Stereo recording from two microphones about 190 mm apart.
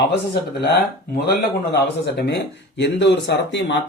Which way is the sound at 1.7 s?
60° left (ahead or behind).